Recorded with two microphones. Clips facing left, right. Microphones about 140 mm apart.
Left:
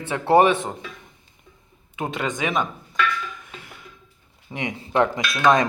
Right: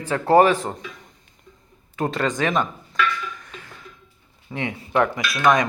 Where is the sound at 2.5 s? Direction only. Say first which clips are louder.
Right 2 dB; centre (ahead or behind).